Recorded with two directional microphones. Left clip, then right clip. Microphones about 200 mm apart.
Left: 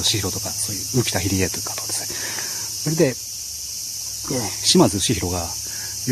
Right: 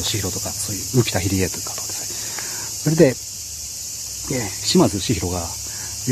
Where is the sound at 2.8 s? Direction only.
Centre (ahead or behind).